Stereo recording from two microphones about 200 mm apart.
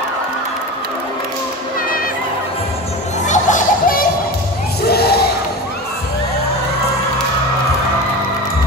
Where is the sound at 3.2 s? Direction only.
40° left (ahead or behind).